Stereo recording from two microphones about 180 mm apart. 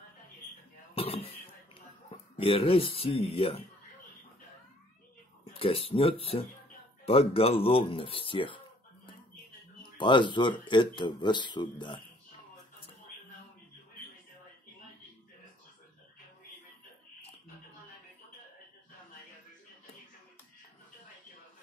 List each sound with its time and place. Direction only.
0.9 s a sound: 35° left (ahead or behind)
2.0 s speech: 30° left (ahead or behind)
5.4 s speech: 30° left (ahead or behind)
9.9 s speech: 25° left (ahead or behind)